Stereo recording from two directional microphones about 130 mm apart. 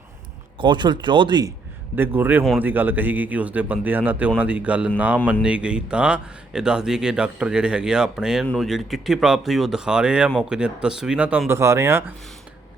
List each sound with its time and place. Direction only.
0.6 s speech: 35° right (ahead or behind)
2.0 s speech: 15° right (ahead or behind)